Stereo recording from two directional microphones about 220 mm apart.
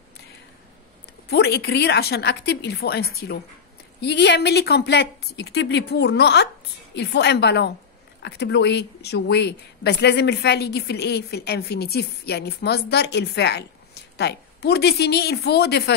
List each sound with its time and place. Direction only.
1.3 s speech: 50° left (ahead or behind)